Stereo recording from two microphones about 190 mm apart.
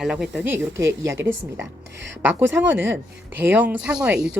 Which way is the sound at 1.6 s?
70° right (ahead or behind).